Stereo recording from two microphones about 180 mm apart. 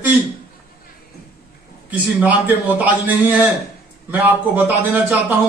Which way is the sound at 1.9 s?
10° right (ahead or behind).